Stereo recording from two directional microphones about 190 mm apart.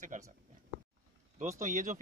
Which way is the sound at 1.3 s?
40° right (ahead or behind).